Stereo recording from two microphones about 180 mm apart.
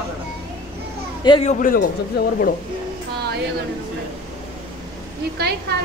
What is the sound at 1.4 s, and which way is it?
Speech, 50° left (ahead or behind).